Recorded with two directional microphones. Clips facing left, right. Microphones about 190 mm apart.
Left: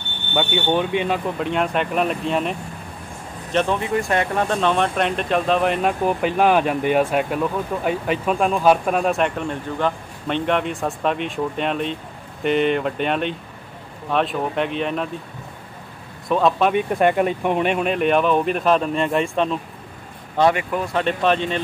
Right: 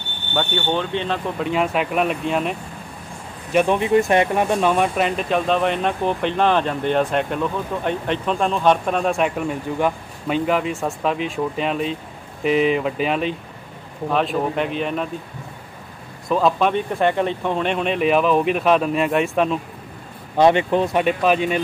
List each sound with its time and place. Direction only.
0.3 s speech: 10° left (ahead or behind)
1.4 s speech: centre (ahead or behind)
3.5 s speech: 20° right (ahead or behind); by 15.0 s centre (ahead or behind)
16.3 s speech: centre (ahead or behind)
16.7 s speech: 10° left (ahead or behind); by 19.6 s 5° right (ahead or behind)
20.3 s speech: 25° right (ahead or behind)
20.9 s speech: 10° right (ahead or behind)